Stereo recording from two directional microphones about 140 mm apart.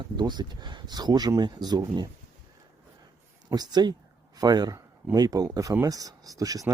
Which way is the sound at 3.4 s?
30° right (ahead or behind).